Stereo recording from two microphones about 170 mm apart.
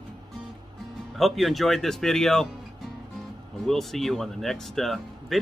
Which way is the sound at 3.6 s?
Centre (ahead or behind).